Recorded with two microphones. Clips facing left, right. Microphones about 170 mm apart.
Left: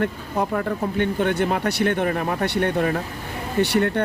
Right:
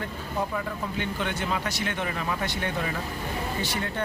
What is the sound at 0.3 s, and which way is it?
Speech, 55° left (ahead or behind).